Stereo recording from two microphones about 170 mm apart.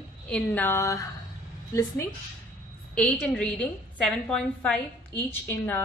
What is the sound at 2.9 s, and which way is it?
A woman's voice, 5° left (ahead or behind).